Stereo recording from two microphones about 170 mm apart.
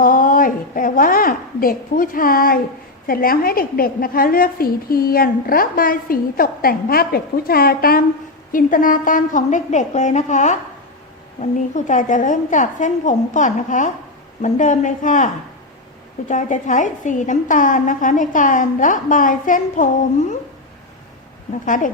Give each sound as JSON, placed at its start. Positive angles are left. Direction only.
{"t": 0.0, "sound": "a sound", "side_deg": 55}
{"t": 3.1, "sound": "a woman's voice", "side_deg": 60}
{"t": 16.3, "sound": "a woman's voice", "side_deg": 45}